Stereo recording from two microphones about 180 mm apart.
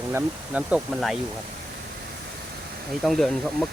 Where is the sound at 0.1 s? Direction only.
5° right (ahead or behind).